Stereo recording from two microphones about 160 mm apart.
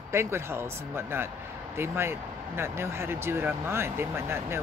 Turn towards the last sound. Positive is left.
turn(degrees=-15)  # may be behind; listen again after turning